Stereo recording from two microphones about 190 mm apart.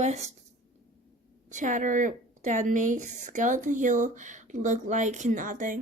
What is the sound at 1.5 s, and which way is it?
A woman's voice, 40° right (ahead or behind).